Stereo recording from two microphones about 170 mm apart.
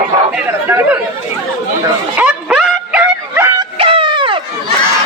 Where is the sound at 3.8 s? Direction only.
30° right (ahead or behind).